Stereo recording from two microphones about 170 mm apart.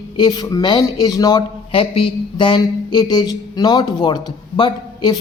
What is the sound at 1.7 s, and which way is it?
A woman's voice, 35° left (ahead or behind).